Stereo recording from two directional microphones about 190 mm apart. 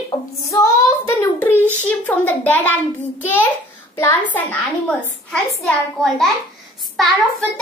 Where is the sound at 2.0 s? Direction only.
10° left (ahead or behind).